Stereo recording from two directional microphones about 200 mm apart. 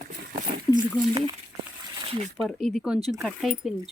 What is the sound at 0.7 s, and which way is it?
Speech, 20° right (ahead or behind).